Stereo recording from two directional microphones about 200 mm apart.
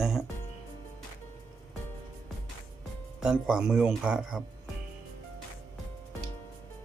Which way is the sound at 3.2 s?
5° right (ahead or behind).